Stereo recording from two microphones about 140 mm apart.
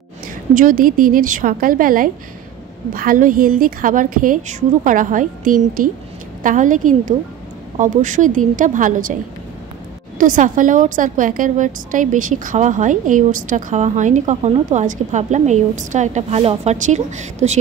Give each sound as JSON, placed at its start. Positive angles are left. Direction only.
{"t": 0.6, "sound": "a woman's voice", "side_deg": -80}
{"t": 6.4, "sound": "a woman's voice", "side_deg": -65}
{"t": 10.1, "sound": "a woman's voice", "side_deg": -70}